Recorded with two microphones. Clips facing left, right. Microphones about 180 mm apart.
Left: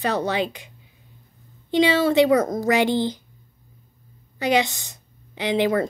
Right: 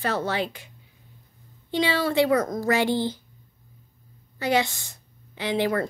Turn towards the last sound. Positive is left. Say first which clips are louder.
# left 4 dB
turn(degrees=20)  # may be behind; listen again after turning